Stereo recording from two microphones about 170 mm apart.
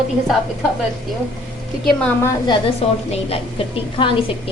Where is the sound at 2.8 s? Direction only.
35° left (ahead or behind).